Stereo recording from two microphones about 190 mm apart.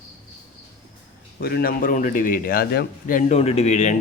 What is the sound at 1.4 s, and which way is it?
Speech, 55° left (ahead or behind).